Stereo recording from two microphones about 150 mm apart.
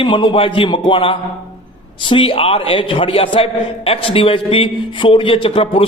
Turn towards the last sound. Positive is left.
turn(degrees=35)  # may be behind; listen again after turning